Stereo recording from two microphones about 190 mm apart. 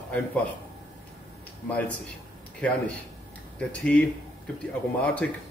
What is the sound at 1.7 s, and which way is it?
Speech, 5° left (ahead or behind).